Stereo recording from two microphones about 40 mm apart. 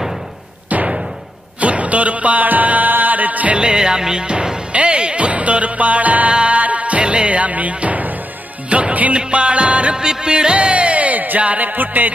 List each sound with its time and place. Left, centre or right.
0.7 s knock: right
1.6 s music: right
3.5 s music: centre; by 9.1 s right
9.1 s music: right
9.9 s music: centre; by 12.1 s right